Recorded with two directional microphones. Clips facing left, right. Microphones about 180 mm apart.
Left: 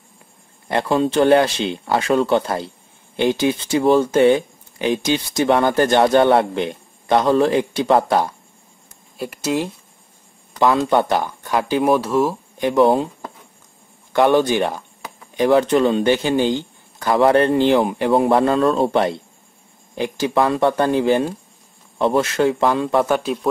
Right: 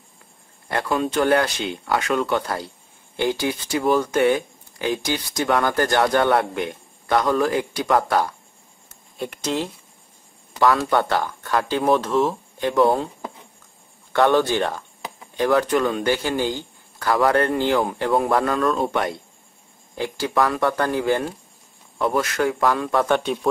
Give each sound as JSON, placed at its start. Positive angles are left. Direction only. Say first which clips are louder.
{"t": 0.7, "sound": "speech", "louder": "left 5 dB", "side_deg": 25}
{"t": 9.2, "sound": "speech", "louder": "left 3 dB", "side_deg": 5}
{"t": 10.6, "sound": "speech", "louder": "left 3 dB", "side_deg": 20}
{"t": 14.1, "sound": "speech", "louder": "left 3 dB", "side_deg": 15}
{"t": 20.0, "sound": "speech", "louder": "left 3 dB", "side_deg": 20}
{"t": 23.0, "sound": "speech", "louder": "left 1 dB", "side_deg": 0}